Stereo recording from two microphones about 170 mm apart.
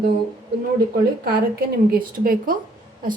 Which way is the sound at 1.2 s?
60° right (ahead or behind).